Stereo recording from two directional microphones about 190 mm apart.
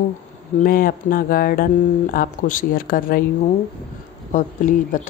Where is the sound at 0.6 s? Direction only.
50° left (ahead or behind).